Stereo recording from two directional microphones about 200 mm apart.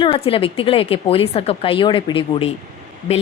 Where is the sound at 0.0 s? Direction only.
25° left (ahead or behind).